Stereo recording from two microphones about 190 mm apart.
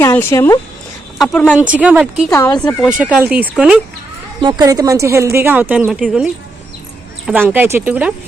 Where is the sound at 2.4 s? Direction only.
20° left (ahead or behind).